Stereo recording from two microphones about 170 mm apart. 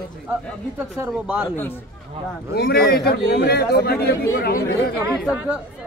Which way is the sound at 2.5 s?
70° left (ahead or behind).